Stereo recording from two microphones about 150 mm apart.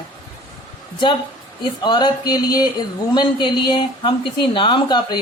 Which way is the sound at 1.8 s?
30° left (ahead or behind).